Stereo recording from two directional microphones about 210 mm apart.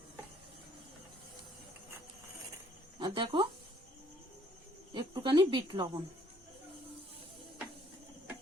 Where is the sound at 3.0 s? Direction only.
20° right (ahead or behind).